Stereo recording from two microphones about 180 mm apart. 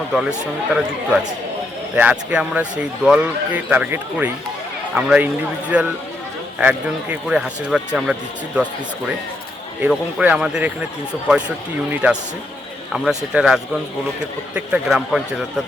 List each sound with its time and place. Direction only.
0.7 s a man's voice: 5° right (ahead or behind)
9.8 s a man's voice: 10° right (ahead or behind)
12.9 s a man's voice: 5° right (ahead or behind)